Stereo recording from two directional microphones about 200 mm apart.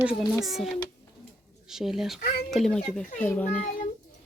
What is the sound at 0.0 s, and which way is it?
A woman's voice, 5° right (ahead or behind).